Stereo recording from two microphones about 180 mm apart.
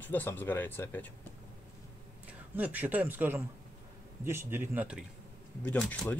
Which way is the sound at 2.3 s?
10° right (ahead or behind).